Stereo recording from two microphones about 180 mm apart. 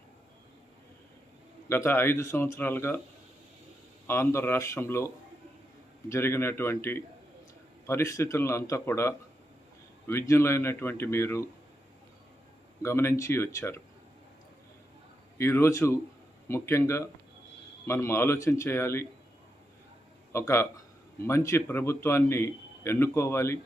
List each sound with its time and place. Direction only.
1.6 s a man's voice: 15° left (ahead or behind)
4.0 s a man's voice: 15° left (ahead or behind)
12.8 s a man's voice: 15° left (ahead or behind)
15.4 s a man's voice: 15° left (ahead or behind)
20.3 s a man's voice: 15° left (ahead or behind)